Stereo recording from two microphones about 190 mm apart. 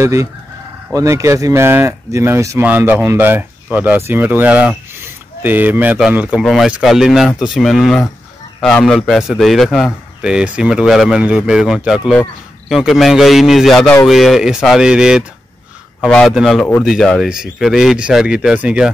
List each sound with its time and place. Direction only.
0.0 s speech: 15° right (ahead or behind)